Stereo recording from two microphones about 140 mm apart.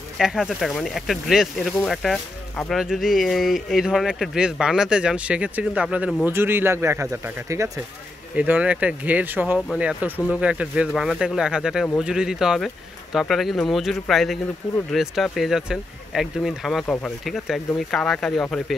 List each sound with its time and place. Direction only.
0.2 s speech: 5° right (ahead or behind); by 7.8 s 20° right (ahead or behind)
8.4 s speech: 10° right (ahead or behind)
16.8 s speech: 10° left (ahead or behind)
17.2 s speech: centre (ahead or behind)